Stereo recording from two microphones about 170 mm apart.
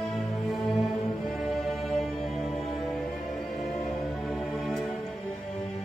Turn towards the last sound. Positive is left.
turn(degrees=0)  # may be behind; listen again after turning